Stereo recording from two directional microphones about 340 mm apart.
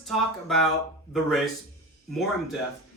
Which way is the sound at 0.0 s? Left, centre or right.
Centre.